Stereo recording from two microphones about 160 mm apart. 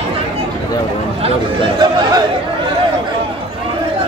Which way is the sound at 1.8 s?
25° right (ahead or behind).